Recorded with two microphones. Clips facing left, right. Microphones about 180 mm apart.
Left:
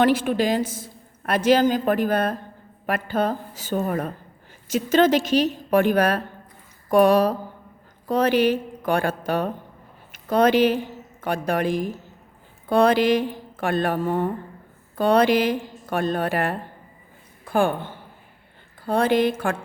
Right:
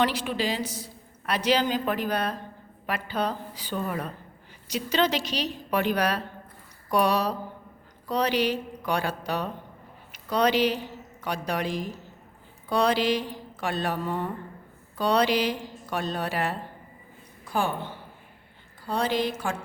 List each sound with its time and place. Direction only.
0.0 s a man's voice: 50° left (ahead or behind)